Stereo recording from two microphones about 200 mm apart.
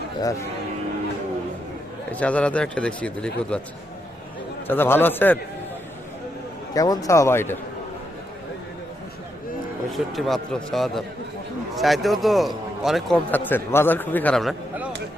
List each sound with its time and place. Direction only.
2.1 s a man's voice: 5° left (ahead or behind)
4.7 s speech: 10° left (ahead or behind)
6.7 s speech: 20° left (ahead or behind)
9.9 s a man's voice: centre (ahead or behind)